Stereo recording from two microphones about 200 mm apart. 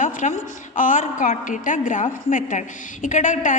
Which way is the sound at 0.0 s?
40° left (ahead or behind).